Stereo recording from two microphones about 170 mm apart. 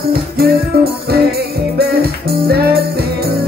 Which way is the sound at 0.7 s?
65° right (ahead or behind).